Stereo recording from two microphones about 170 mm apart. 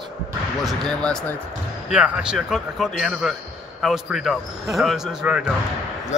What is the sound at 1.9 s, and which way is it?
A man's voice, 5° right (ahead or behind).